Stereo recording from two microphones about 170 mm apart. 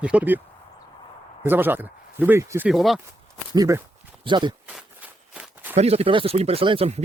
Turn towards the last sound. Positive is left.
turn(degrees=-35)  # may be behind; listen again after turning